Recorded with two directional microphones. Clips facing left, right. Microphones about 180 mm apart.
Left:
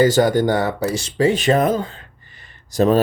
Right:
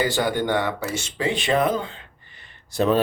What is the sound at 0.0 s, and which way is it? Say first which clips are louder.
Speech: left 8 dB; 45° left (ahead or behind).